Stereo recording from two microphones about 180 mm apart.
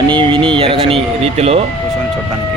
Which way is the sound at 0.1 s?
30° right (ahead or behind).